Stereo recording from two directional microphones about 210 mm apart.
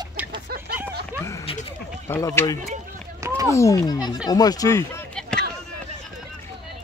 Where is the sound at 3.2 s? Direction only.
15° right (ahead or behind).